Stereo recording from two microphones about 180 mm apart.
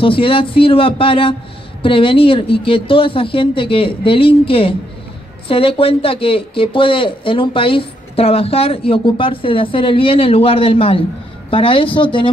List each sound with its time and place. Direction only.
0.0 s speech: 30° left (ahead or behind)